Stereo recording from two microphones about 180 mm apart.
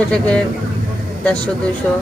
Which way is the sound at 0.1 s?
5° left (ahead or behind).